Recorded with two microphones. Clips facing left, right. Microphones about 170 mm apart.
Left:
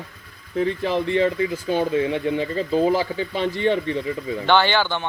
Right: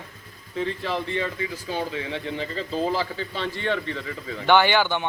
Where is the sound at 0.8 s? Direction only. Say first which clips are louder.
Left 7 dB; 20° left (ahead or behind).